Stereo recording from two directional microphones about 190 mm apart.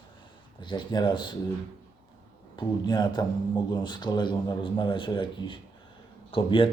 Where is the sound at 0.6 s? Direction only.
25° left (ahead or behind).